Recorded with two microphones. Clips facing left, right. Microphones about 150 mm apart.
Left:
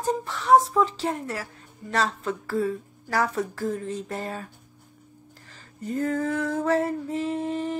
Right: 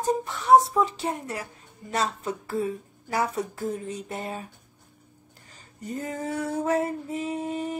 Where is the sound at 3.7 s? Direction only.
15° right (ahead or behind).